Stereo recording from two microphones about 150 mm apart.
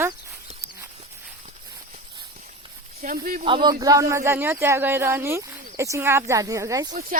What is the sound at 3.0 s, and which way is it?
Speech, 70° right (ahead or behind).